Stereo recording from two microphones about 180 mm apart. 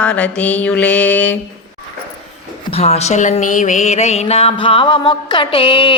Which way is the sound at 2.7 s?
35° left (ahead or behind).